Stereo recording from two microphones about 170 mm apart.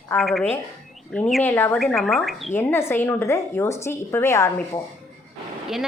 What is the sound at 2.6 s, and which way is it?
A woman's voice, 15° left (ahead or behind).